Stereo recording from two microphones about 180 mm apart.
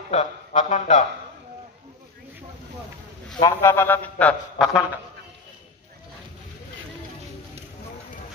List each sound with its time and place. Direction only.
0.1 s speech: 40° left (ahead or behind)
3.3 s a man's voice: 20° left (ahead or behind); by 4.8 s 5° left (ahead or behind)